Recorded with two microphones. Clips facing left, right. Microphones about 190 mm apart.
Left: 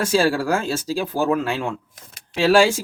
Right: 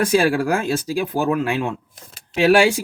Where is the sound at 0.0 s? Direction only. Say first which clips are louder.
Right 2 dB; 15° right (ahead or behind).